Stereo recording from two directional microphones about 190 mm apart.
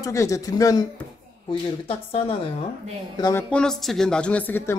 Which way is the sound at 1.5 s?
30° left (ahead or behind).